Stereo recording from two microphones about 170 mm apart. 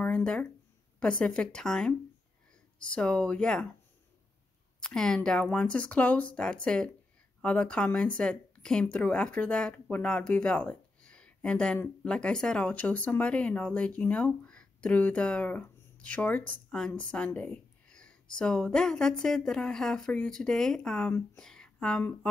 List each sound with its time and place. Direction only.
0.0 s speech: 5° left (ahead or behind)
4.7 s speech: 5° left (ahead or behind)